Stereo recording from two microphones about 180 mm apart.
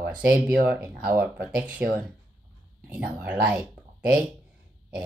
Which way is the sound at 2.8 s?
10° right (ahead or behind).